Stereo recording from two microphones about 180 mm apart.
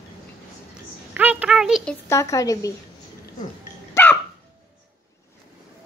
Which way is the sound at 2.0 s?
15° left (ahead or behind).